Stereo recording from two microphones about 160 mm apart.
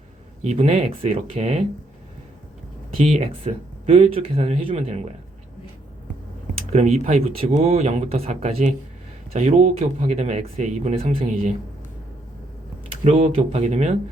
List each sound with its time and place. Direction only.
0.4 s speech: 40° right (ahead or behind)
3.1 s speech: 40° right (ahead or behind)
6.7 s speech: 45° right (ahead or behind)
13.1 s speech: 45° right (ahead or behind)